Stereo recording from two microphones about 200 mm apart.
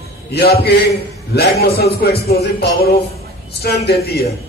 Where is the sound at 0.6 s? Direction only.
55° left (ahead or behind).